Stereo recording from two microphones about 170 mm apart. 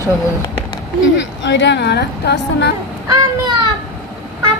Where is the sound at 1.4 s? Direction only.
90° left.